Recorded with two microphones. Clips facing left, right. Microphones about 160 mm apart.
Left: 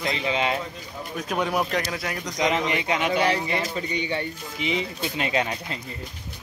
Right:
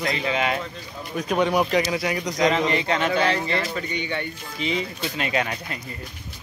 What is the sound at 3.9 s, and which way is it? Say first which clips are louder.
Speech: left 2 dB; 30° left (ahead or behind).